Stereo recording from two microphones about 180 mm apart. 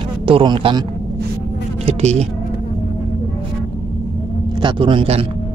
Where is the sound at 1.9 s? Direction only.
35° right (ahead or behind).